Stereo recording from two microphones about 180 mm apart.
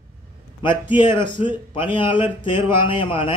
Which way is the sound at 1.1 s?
25° left (ahead or behind).